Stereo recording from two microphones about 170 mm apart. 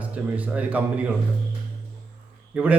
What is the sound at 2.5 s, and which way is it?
Speech, 10° right (ahead or behind).